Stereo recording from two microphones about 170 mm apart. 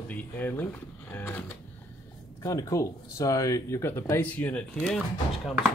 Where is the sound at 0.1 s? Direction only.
10° left (ahead or behind).